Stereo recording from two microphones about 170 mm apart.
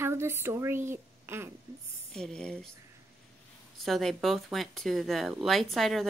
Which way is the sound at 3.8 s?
Centre (ahead or behind).